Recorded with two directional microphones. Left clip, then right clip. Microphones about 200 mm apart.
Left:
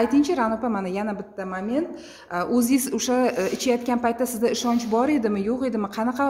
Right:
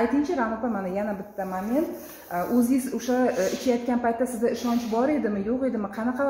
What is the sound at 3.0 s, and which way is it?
A woman's voice, 40° left (ahead or behind).